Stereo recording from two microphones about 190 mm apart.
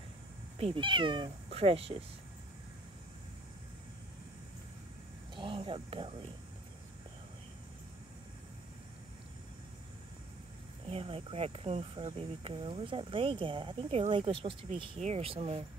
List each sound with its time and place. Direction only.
0.6 s speech: 30° right (ahead or behind)
5.3 s a sound: 25° right (ahead or behind)
10.9 s speech: 30° right (ahead or behind)